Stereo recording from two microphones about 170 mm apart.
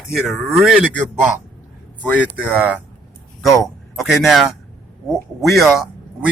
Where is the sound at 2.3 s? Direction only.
10° right (ahead or behind).